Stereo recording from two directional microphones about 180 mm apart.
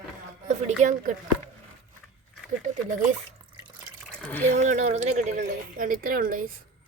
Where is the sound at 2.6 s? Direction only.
45° right (ahead or behind).